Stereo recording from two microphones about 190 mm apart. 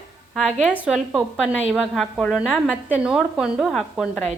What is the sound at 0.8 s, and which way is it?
Speech, 5° right (ahead or behind).